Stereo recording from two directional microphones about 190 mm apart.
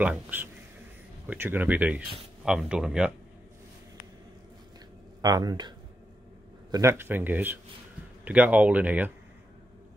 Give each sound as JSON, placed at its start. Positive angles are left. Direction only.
{"t": 0.0, "sound": "speech", "side_deg": -10}
{"t": 5.2, "sound": "speech", "side_deg": -20}
{"t": 6.7, "sound": "speech", "side_deg": -15}